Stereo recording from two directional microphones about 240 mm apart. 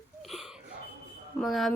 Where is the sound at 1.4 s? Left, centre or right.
Centre.